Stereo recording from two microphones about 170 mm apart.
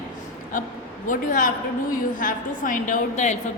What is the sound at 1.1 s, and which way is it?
A woman's voice, 50° left (ahead or behind).